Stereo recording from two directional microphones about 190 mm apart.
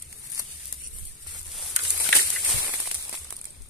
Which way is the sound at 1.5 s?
Centre (ahead or behind).